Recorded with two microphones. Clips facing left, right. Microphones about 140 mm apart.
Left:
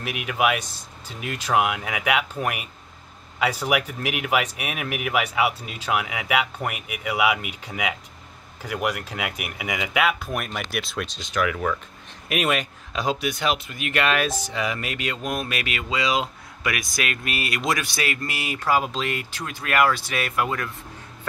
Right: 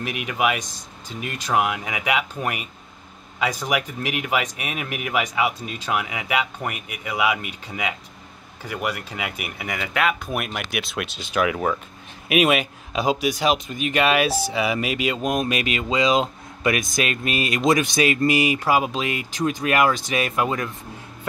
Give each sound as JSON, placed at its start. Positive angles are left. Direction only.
{"t": 0.0, "sound": "speech", "side_deg": 5}
{"t": 11.4, "sound": "speech", "side_deg": -25}
{"t": 12.3, "sound": "speech", "side_deg": -15}